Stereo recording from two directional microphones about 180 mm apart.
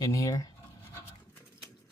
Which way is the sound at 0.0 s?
20° left (ahead or behind).